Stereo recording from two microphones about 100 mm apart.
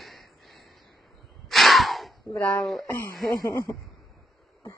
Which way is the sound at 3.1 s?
Centre (ahead or behind).